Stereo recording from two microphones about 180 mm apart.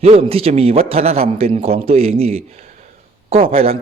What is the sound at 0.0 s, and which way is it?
Speech, 35° right (ahead or behind).